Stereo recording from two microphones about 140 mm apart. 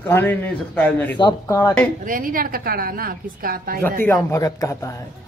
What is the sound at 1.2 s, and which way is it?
Speech, 25° left (ahead or behind).